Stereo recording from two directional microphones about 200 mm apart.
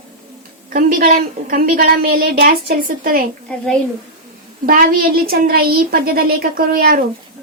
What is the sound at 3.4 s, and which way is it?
Speech, 5° left (ahead or behind).